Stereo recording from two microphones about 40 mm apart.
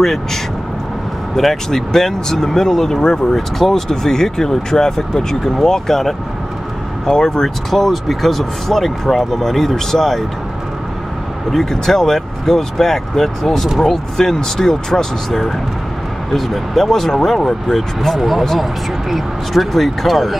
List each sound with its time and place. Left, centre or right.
0.0 s speech: centre
11.5 s speech: centre